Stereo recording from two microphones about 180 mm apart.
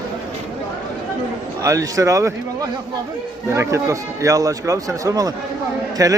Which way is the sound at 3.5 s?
15° right (ahead or behind).